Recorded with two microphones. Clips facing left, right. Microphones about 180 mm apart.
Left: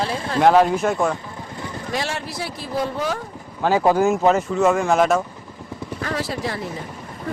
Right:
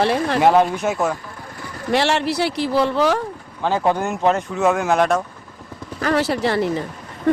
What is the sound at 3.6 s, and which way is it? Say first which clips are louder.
Speech: left 3 dB; 5° left (ahead or behind).